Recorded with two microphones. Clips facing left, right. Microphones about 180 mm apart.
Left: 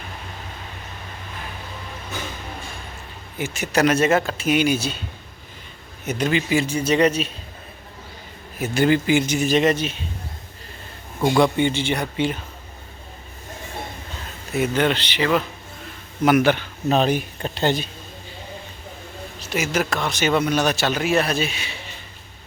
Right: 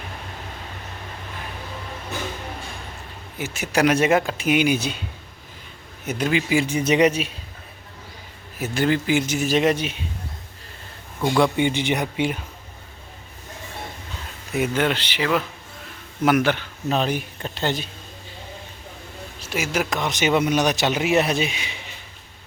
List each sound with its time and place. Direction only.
3.3 s speech: 5° right (ahead or behind)
6.1 s speech: 5° right (ahead or behind)
8.5 s a man's voice: centre (ahead or behind)
11.3 s speech: 10° left (ahead or behind)
11.5 s speech: 15° right (ahead or behind)
14.5 s a man's voice: 10° right (ahead or behind)
17.1 s speech: 25° left (ahead or behind)
19.5 s speech: 5° right (ahead or behind)
20.0 s a man's voice: 20° right (ahead or behind)